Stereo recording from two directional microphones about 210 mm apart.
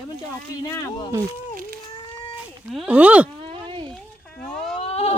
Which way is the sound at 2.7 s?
5° right (ahead or behind).